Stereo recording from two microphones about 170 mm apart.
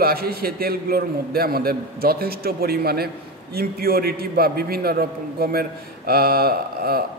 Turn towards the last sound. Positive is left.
turn(degrees=-65)  # may be behind; listen again after turning